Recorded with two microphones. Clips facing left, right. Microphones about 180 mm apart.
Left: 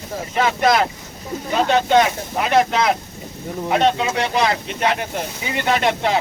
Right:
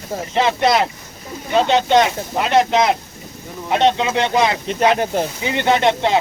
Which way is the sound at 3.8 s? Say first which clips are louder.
Right 5 dB; 25° right (ahead or behind).